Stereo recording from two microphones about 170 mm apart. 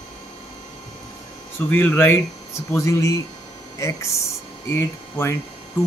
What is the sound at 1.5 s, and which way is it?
Speech, 10° left (ahead or behind).